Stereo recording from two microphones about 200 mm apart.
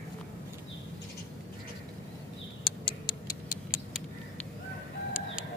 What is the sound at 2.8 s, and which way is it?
Tick-tock, 15° left (ahead or behind).